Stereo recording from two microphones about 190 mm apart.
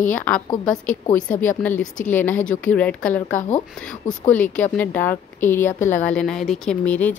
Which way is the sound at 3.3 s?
40° left (ahead or behind).